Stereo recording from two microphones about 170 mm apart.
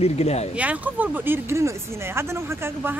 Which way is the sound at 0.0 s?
40° left (ahead or behind).